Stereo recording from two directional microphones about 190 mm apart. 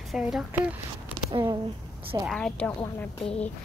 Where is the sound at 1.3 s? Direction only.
20° right (ahead or behind).